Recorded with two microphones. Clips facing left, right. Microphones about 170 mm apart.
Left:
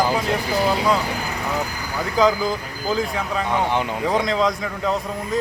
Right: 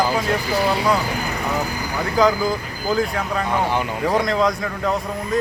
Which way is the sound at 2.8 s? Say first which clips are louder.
Right 2 dB; centre (ahead or behind).